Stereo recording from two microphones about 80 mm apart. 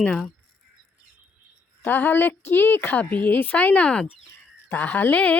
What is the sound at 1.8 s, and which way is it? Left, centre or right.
A woman's voice, left.